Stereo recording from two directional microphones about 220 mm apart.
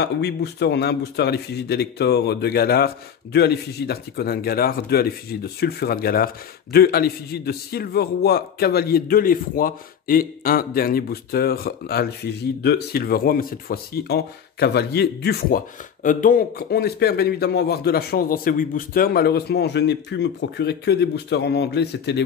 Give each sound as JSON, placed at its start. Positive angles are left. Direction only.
{"t": 0.0, "sound": "speech", "side_deg": 50}